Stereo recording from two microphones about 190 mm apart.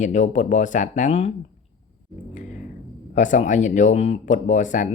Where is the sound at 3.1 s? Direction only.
40° left (ahead or behind).